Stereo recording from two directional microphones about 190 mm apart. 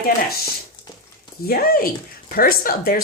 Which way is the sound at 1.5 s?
50° left (ahead or behind).